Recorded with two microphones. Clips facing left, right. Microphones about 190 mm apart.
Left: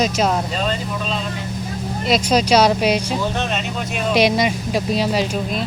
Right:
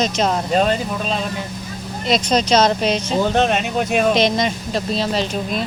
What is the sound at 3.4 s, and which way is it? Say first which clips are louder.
Speech: right 6 dB; 50° right (ahead or behind).